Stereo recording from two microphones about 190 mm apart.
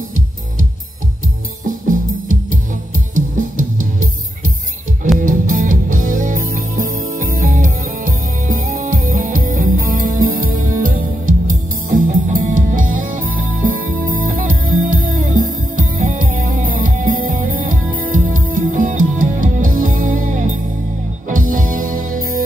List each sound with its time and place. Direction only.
1.7 s music: 45° right (ahead or behind)